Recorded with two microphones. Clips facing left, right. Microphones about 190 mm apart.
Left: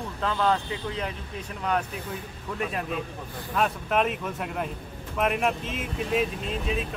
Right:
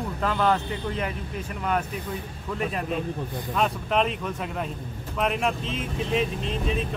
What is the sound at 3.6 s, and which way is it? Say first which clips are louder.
Speech: even; 5° left (ahead or behind).